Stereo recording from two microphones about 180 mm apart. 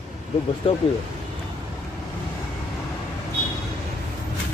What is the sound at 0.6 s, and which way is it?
Speech, 30° left (ahead or behind).